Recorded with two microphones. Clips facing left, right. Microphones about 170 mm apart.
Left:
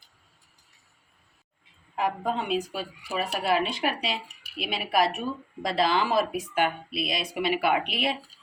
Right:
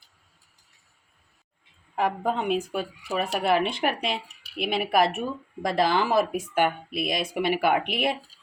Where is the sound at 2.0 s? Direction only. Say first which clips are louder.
Right 2 dB; 55° right (ahead or behind).